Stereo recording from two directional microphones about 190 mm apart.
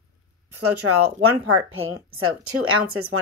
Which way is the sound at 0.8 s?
90° right.